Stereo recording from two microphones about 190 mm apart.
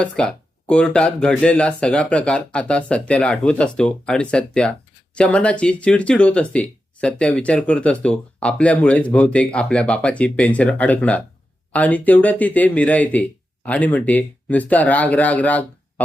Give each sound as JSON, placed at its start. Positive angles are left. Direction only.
{"t": 0.0, "sound": "speech", "side_deg": 5}